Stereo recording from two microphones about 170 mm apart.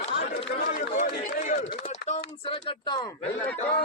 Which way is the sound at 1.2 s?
50° left (ahead or behind).